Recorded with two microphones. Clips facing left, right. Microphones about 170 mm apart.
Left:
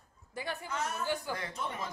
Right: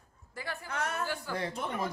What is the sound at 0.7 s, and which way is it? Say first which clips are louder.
Speech: right 2 dB; 65° right (ahead or behind).